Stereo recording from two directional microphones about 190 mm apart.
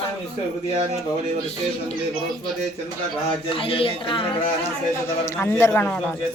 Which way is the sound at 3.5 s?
30° left (ahead or behind).